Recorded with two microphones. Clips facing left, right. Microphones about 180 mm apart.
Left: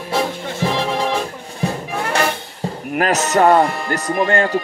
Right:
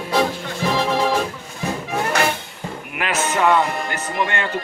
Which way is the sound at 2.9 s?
40° left (ahead or behind).